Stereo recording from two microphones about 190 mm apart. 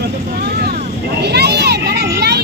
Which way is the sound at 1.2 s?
60° right (ahead or behind).